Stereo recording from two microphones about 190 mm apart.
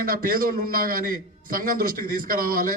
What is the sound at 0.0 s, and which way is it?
A man's voice, 50° right (ahead or behind).